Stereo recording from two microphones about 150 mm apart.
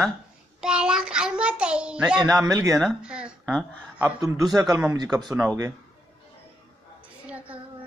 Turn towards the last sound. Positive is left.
turn(degrees=-10)  # may be behind; listen again after turning